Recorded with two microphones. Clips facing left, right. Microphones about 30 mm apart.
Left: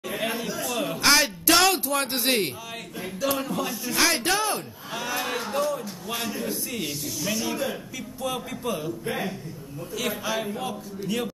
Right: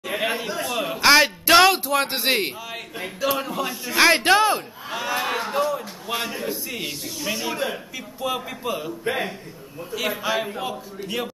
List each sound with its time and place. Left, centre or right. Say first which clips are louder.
0.1 s chatter: right 4 dB; right
0.7 s a man's voice: right 5 dB; right
3.9 s a man's voice: right 7 dB; right
4.9 s a man's voice: right 4 dB; centre